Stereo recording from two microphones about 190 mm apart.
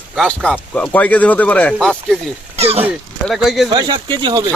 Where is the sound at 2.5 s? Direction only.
35° right (ahead or behind).